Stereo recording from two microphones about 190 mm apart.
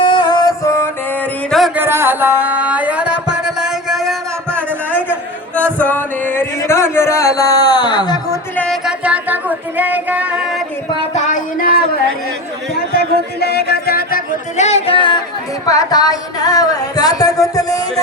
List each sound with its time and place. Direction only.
0.0 s music: 25° left (ahead or behind)
1.5 s music: centre (ahead or behind)
1.8 s music: 10° right (ahead or behind)
4.5 s a sound: 10° left (ahead or behind)
8.5 s music: 5° left (ahead or behind)
11.1 s music: 40° left (ahead or behind)
13.4 s music: 55° left (ahead or behind)
14.5 s music: 35° left (ahead or behind); by 17.7 s 20° left (ahead or behind)